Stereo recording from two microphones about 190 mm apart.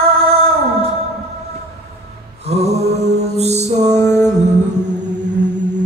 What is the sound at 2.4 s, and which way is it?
Mantra, 35° right (ahead or behind).